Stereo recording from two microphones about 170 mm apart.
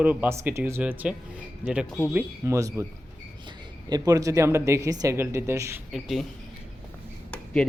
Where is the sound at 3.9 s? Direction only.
20° right (ahead or behind).